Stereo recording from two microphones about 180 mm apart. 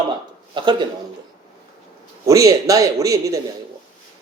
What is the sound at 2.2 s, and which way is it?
Speech, 20° right (ahead or behind).